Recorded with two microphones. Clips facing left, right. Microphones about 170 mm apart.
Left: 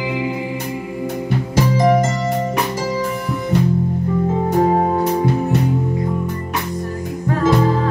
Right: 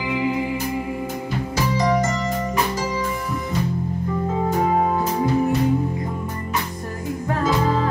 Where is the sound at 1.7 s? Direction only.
50° left (ahead or behind).